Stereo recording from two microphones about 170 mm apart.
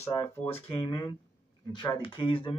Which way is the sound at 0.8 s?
25° left (ahead or behind).